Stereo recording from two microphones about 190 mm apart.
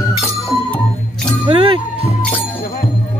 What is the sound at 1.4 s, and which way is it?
Music, 30° right (ahead or behind).